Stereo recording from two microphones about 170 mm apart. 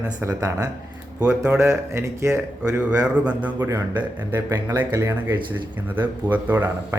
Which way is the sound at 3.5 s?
20° right (ahead or behind).